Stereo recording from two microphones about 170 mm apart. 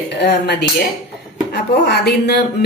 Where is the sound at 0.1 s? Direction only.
75° left (ahead or behind).